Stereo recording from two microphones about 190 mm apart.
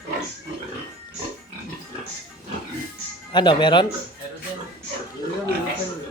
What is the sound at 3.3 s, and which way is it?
Speech, 25° left (ahead or behind).